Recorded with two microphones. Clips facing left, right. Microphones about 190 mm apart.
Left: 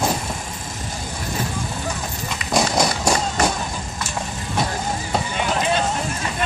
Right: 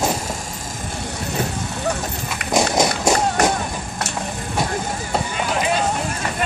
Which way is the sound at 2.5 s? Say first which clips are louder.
Right 2 dB; 20° right (ahead or behind).